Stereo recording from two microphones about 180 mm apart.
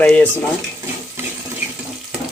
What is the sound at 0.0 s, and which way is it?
Speech, 10° left (ahead or behind).